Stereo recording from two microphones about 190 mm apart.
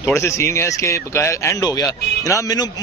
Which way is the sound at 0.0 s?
15° left (ahead or behind).